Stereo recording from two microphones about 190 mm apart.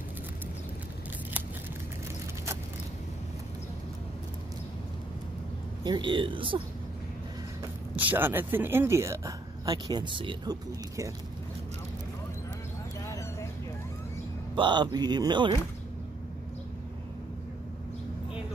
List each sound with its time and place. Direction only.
5.9 s a man's voice: 25° right (ahead or behind)
7.9 s speech: 10° right (ahead or behind)
13.0 s a sound: 15° left (ahead or behind)
14.5 s a man's voice: 25° right (ahead or behind)